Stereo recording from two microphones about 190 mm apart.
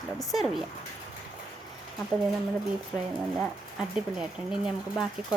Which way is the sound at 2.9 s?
5° right (ahead or behind).